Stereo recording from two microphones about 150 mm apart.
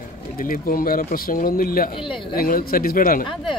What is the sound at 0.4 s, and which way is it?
Speech, 70° left (ahead or behind).